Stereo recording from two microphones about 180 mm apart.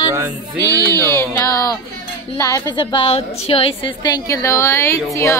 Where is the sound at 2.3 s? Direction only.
15° left (ahead or behind).